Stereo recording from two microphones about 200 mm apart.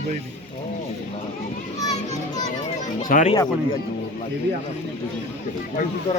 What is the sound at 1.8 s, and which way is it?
Children playing, 20° left (ahead or behind).